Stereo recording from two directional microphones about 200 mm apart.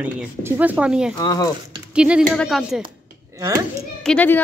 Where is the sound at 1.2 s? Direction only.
20° left (ahead or behind).